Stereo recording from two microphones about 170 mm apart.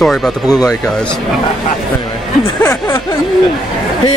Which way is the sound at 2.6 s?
15° left (ahead or behind).